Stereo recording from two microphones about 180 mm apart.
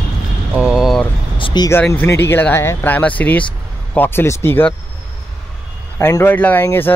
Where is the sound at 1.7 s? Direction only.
10° left (ahead or behind).